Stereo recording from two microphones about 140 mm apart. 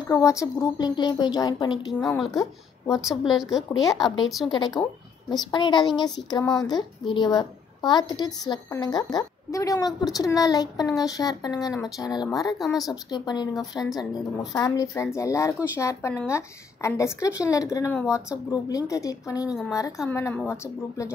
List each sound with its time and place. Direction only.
0.1 s a woman's voice: 20° left (ahead or behind)
2.0 s a woman's voice: centre (ahead or behind)
4.5 s a woman's voice: 30° left (ahead or behind)
12.5 s a woman's voice: centre (ahead or behind)
12.9 s speech: 30° left (ahead or behind)
13.8 s a woman's voice: centre (ahead or behind)
14.5 s a woman's voice: 25° left (ahead or behind)